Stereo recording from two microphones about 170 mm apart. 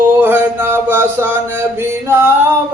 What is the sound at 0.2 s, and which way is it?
Mantra, 10° right (ahead or behind).